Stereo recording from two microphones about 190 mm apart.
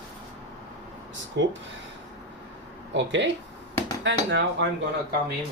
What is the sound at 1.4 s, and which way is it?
Speech, 65° right (ahead or behind).